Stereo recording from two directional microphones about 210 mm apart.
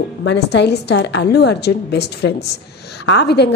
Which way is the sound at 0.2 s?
55° left (ahead or behind).